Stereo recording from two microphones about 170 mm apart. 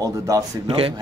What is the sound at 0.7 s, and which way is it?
Speech, 35° right (ahead or behind).